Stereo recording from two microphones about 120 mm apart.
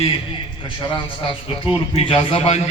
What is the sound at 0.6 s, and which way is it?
A man's voice, 40° left (ahead or behind).